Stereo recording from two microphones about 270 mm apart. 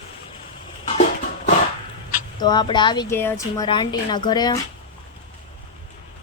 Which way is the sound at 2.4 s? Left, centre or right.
Centre.